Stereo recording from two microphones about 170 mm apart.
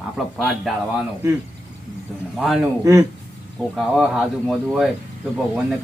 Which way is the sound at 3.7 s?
5° right (ahead or behind).